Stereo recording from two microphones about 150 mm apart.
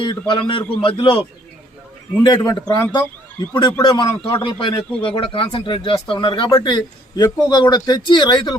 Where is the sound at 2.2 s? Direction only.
25° left (ahead or behind).